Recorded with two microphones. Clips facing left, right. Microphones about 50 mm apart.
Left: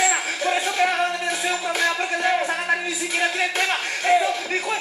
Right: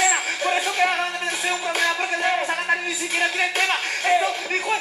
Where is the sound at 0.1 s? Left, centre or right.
Centre.